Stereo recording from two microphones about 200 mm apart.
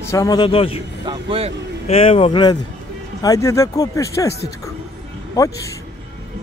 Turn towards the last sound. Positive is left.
turn(degrees=15)  # may be behind; listen again after turning